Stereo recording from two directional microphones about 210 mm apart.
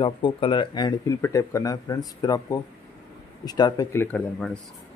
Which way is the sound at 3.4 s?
20° left (ahead or behind).